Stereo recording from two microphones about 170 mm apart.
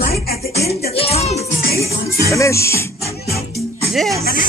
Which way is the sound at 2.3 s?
15° left (ahead or behind).